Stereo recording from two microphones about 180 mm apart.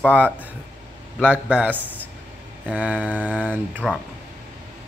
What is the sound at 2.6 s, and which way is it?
Speech, 5° right (ahead or behind).